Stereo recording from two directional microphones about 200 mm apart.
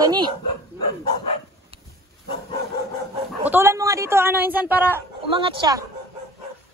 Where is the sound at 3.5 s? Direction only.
10° right (ahead or behind).